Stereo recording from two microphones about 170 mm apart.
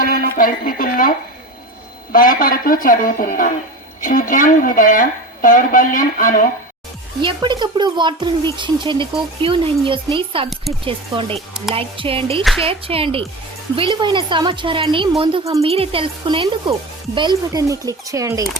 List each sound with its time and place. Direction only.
0.0 s speech: 55° left (ahead or behind)
2.1 s speech: 55° left (ahead or behind)
7.2 s speech: 25° right (ahead or behind)
12.4 s speech: centre (ahead or behind)
12.6 s speech: 35° right (ahead or behind); by 18.4 s 20° right (ahead or behind)